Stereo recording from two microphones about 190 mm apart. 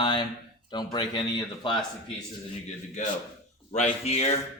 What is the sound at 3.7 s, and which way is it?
Speech, 35° left (ahead or behind).